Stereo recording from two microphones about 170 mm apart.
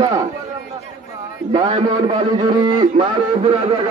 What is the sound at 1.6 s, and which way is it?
Speech, 35° right (ahead or behind).